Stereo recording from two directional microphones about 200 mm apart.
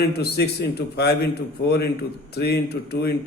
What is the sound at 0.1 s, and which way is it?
A man's voice, 55° left (ahead or behind).